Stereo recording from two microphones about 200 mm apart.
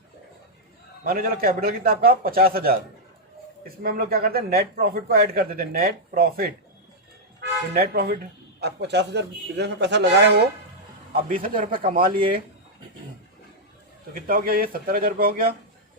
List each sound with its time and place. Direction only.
1.0 s a man's voice: 45° right (ahead or behind)
3.8 s a man's voice: 45° right (ahead or behind)
7.7 s a man's voice: 50° right (ahead or behind)
11.3 s a man's voice: 45° right (ahead or behind)
14.1 s a man's voice: 45° right (ahead or behind)